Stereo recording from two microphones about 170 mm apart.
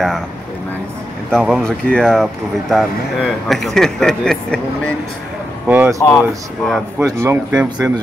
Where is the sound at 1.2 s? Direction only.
Centre (ahead or behind).